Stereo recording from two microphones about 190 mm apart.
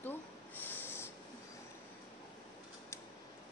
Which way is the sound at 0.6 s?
10° left (ahead or behind).